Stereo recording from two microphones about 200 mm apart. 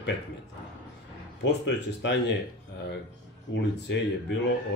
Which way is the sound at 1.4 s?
60° left (ahead or behind).